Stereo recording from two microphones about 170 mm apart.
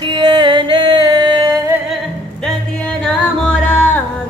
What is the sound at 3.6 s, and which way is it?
Music, 10° left (ahead or behind).